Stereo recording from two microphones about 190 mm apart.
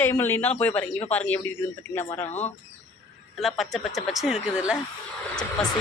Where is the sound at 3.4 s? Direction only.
Centre (ahead or behind).